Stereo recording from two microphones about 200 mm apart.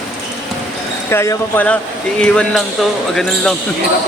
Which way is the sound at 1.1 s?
15° left (ahead or behind).